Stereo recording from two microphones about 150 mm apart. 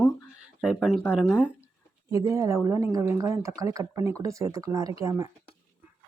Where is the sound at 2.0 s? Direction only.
20° right (ahead or behind).